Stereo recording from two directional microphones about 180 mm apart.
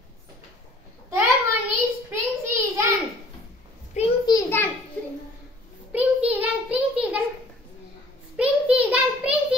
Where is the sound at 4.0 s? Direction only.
40° left (ahead or behind).